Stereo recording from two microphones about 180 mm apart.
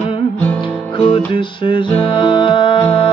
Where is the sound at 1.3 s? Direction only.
30° left (ahead or behind).